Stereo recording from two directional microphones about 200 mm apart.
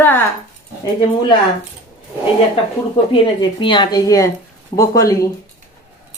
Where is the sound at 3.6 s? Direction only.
25° left (ahead or behind).